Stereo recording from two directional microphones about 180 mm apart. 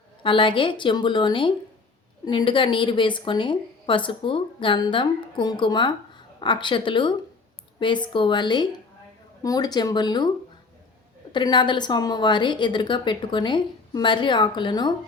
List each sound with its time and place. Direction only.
0.2 s a woman's voice: 30° left (ahead or behind)
11.3 s a woman's voice: 25° left (ahead or behind)